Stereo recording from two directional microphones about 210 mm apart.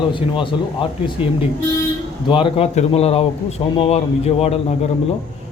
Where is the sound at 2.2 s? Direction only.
25° left (ahead or behind).